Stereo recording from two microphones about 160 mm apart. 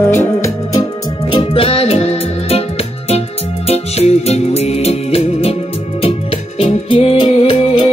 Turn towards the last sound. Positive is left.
turn(degrees=35)  # may be behind; listen again after turning